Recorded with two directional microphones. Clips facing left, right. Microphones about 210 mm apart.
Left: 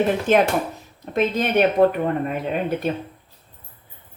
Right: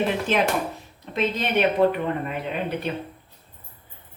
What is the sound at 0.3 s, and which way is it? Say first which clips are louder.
Speech: left 5 dB; 50° left (ahead or behind).